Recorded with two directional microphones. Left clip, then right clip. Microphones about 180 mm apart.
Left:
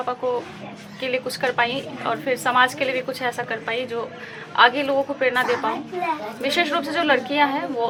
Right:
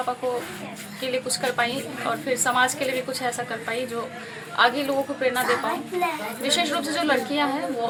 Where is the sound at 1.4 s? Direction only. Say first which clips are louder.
Left 5 dB; 35° left (ahead or behind).